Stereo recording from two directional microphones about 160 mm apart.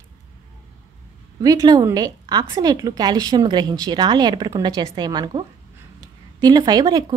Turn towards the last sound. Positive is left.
turn(degrees=-25)  # may be behind; listen again after turning